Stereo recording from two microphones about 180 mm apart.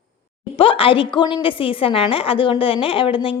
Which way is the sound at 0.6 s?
30° left (ahead or behind).